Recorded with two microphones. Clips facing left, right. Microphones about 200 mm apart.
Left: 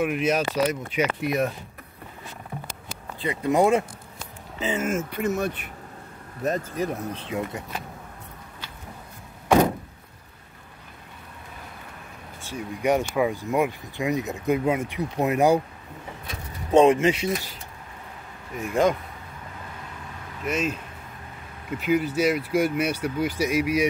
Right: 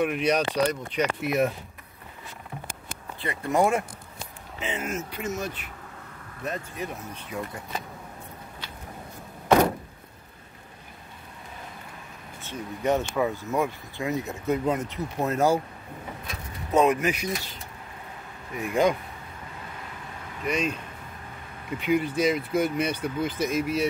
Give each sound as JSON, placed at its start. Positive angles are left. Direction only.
{"t": 0.0, "sound": "speech", "side_deg": 5}
{"t": 3.2, "sound": "speech", "side_deg": 15}
{"t": 4.6, "sound": "speech", "side_deg": 40}
{"t": 6.4, "sound": "speech", "side_deg": 40}
{"t": 7.2, "sound": "speech", "side_deg": 20}
{"t": 12.4, "sound": "speech", "side_deg": 10}
{"t": 16.7, "sound": "speech", "side_deg": 30}
{"t": 18.5, "sound": "speech", "side_deg": 0}
{"t": 20.4, "sound": "speech", "side_deg": 5}